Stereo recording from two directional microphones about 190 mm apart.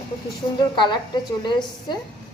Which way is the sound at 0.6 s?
25° left (ahead or behind).